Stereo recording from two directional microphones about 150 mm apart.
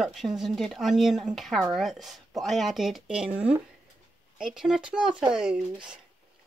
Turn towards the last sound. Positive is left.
turn(degrees=-5)  # may be behind; listen again after turning